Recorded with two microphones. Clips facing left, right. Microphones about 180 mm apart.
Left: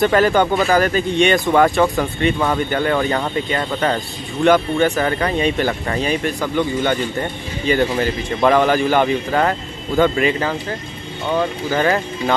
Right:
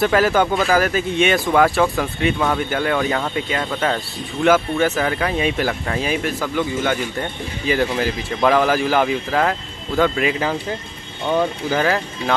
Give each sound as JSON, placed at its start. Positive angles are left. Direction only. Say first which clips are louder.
{"t": 0.0, "sound": "speech", "louder": "left 2 dB", "side_deg": -5}
{"t": 11.8, "sound": "speech", "louder": "left 5 dB", "side_deg": 0}